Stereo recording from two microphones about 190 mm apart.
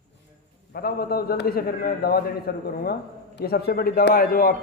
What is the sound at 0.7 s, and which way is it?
A man's voice, 55° left (ahead or behind).